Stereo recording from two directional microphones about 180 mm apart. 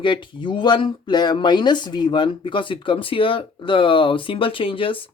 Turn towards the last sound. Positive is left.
turn(degrees=30)  # may be behind; listen again after turning